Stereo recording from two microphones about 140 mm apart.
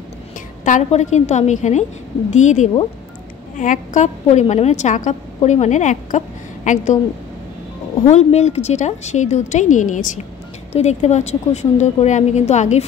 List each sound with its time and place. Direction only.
0.7 s a woman's voice: 60° left (ahead or behind)
8.1 s a woman's voice: 55° left (ahead or behind)
10.7 s a woman's voice: 50° left (ahead or behind)